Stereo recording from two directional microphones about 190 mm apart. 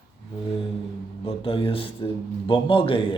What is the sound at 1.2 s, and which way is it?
Speech, 30° left (ahead or behind).